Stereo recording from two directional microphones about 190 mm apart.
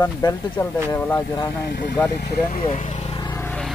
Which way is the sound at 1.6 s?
60° left (ahead or behind).